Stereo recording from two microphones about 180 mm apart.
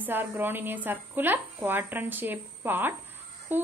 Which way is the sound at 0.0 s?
10° right (ahead or behind).